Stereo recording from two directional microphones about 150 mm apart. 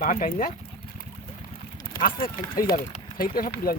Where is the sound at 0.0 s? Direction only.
65° left (ahead or behind).